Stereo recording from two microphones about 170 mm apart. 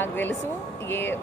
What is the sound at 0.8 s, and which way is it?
Speech, 15° left (ahead or behind).